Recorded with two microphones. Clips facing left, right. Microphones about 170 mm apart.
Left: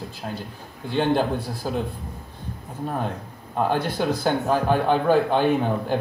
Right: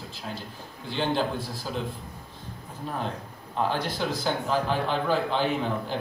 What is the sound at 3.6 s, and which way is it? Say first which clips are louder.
A man's voice: left 6 dB; 55° left (ahead or behind).